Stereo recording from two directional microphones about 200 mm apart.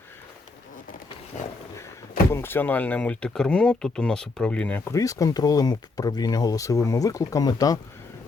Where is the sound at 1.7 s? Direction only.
15° left (ahead or behind).